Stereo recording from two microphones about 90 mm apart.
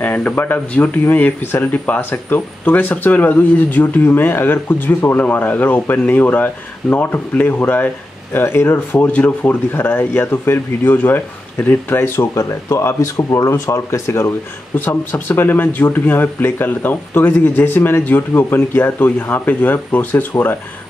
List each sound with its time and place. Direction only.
0.0 s speech: 15° left (ahead or behind)
12.2 s speech: 35° left (ahead or behind)
14.9 s speech: 25° left (ahead or behind)